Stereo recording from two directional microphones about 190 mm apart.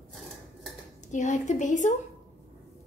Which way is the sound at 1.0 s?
40° left (ahead or behind).